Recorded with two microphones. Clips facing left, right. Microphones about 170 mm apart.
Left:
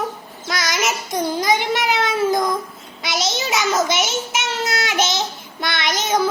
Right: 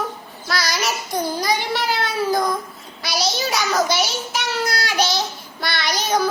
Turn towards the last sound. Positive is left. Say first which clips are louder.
# left 1 dB
turn(degrees=20)  # may be behind; listen again after turning